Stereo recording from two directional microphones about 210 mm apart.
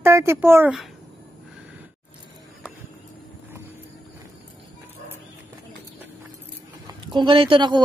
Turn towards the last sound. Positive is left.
turn(degrees=-25)  # may be behind; listen again after turning